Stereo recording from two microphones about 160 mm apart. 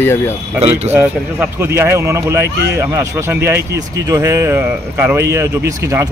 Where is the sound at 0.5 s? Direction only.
40° right (ahead or behind).